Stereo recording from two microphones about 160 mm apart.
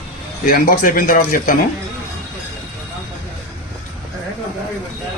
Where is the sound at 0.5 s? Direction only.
65° left (ahead or behind).